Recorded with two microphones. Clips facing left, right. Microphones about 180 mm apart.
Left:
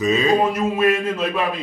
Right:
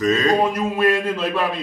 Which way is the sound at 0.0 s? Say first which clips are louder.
Even; 10° left (ahead or behind).